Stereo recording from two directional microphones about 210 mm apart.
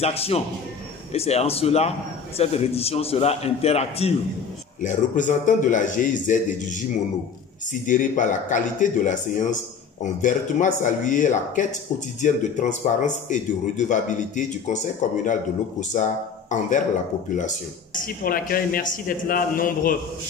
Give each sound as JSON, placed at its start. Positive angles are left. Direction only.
{"t": 0.0, "sound": "a man's voice", "side_deg": 30}
{"t": 7.8, "sound": "speech", "side_deg": 40}